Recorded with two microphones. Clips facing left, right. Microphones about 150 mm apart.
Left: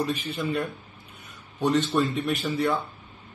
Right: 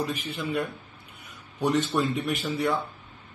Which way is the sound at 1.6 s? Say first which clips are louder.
Left 2 dB; 10° right (ahead or behind).